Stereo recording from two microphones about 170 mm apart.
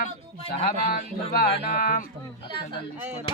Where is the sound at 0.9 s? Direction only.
55° left (ahead or behind).